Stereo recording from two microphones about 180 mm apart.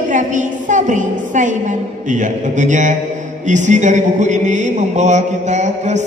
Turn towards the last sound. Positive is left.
turn(degrees=-40)  # may be behind; listen again after turning